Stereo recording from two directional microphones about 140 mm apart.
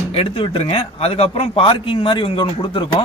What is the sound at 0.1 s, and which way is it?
A man's voice, 40° left (ahead or behind).